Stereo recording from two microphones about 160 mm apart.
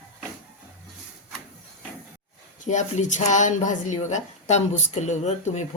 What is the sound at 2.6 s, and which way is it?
Speech, 50° left (ahead or behind).